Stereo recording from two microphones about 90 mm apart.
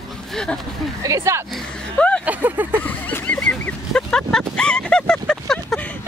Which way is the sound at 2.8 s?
20° left (ahead or behind).